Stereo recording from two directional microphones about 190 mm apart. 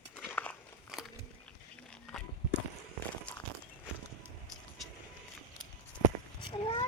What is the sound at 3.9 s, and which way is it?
Walk, 5° right (ahead or behind).